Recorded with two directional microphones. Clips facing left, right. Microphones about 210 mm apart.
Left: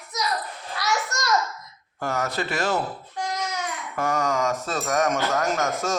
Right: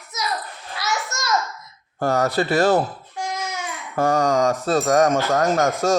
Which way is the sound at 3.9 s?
35° right (ahead or behind).